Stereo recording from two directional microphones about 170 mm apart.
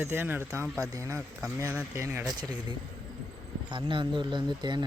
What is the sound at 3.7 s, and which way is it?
Speech, 30° right (ahead or behind).